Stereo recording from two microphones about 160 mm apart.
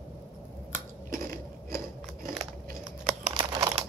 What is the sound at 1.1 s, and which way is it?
Biting, 60° right (ahead or behind).